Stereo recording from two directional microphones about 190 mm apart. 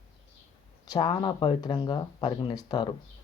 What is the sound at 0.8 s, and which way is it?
Speech, 20° left (ahead or behind).